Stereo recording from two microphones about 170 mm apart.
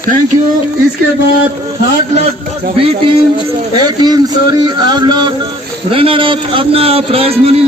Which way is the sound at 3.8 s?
25° right (ahead or behind).